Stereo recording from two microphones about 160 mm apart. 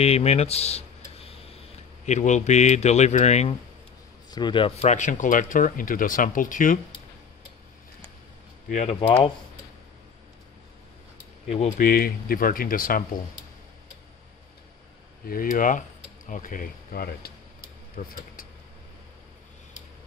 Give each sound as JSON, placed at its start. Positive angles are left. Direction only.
{"t": 0.0, "sound": "speech", "side_deg": 40}
{"t": 4.3, "sound": "a man's voice", "side_deg": 30}
{"t": 4.8, "sound": "speech", "side_deg": 50}
{"t": 8.6, "sound": "speech", "side_deg": 45}
{"t": 11.4, "sound": "speech", "side_deg": 40}
{"t": 11.8, "sound": "speech", "side_deg": 70}
{"t": 15.5, "sound": "speech", "side_deg": 55}